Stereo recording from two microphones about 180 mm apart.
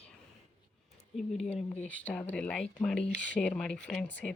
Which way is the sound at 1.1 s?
Centre (ahead or behind).